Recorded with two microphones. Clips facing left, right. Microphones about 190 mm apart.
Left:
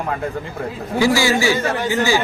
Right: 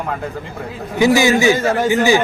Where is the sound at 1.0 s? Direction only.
20° right (ahead or behind).